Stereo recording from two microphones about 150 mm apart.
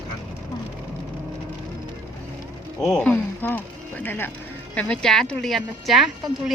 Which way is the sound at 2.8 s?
5° left (ahead or behind).